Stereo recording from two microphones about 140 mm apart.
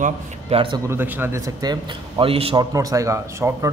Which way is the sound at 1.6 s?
30° right (ahead or behind).